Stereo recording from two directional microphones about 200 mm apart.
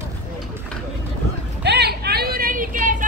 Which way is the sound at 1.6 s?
55° right (ahead or behind).